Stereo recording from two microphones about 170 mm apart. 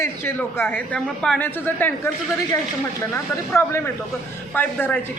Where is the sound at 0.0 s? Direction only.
15° left (ahead or behind).